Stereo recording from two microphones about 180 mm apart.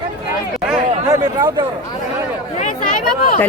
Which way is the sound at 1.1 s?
20° right (ahead or behind).